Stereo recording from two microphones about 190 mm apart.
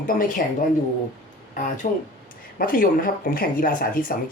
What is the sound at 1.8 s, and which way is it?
Speech, 40° left (ahead or behind).